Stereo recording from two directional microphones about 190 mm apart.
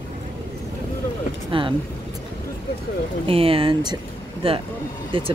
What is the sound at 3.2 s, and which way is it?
Speech, 30° right (ahead or behind).